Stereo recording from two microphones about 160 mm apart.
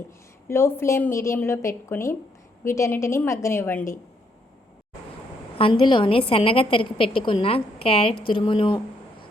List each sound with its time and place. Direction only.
0.4 s a woman's voice: 15° left (ahead or behind)
5.5 s a woman's voice: 30° left (ahead or behind)